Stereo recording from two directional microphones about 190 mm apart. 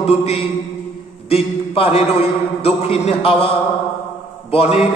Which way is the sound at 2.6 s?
30° left (ahead or behind).